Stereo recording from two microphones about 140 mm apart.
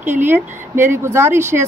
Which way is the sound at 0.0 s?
15° right (ahead or behind).